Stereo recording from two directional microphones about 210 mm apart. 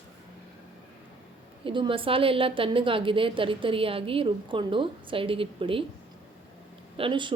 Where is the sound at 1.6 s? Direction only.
25° right (ahead or behind).